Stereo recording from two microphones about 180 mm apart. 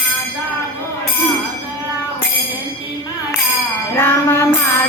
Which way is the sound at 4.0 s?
15° left (ahead or behind).